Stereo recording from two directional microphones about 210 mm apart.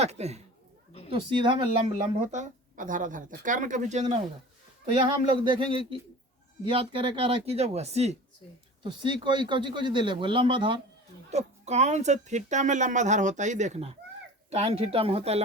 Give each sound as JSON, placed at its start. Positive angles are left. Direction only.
{"t": 0.0, "sound": "speech", "side_deg": -30}
{"t": 4.9, "sound": "speech", "side_deg": -20}